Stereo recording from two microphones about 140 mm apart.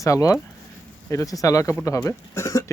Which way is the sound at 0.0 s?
25° left (ahead or behind).